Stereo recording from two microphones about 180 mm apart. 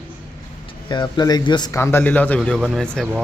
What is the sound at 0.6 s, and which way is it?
A man's voice, 25° left (ahead or behind).